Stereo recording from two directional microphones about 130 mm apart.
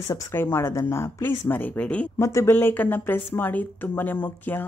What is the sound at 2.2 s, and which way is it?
Speech, 20° left (ahead or behind).